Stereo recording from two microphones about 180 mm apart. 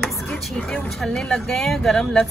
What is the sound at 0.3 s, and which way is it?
Speech, 5° left (ahead or behind).